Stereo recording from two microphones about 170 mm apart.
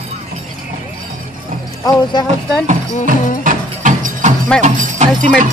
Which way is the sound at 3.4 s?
50° right (ahead or behind).